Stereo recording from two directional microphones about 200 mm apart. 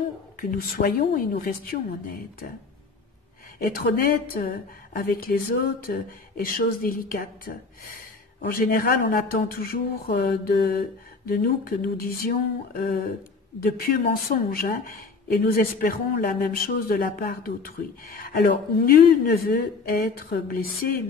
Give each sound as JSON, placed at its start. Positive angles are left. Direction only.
{"t": 0.4, "sound": "speech", "side_deg": 45}
{"t": 3.5, "sound": "speech", "side_deg": 45}
{"t": 13.6, "sound": "speech", "side_deg": 45}